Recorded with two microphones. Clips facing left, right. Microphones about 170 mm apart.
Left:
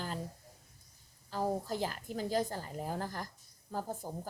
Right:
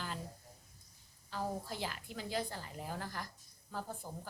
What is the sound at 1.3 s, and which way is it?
A woman's voice, 40° left (ahead or behind).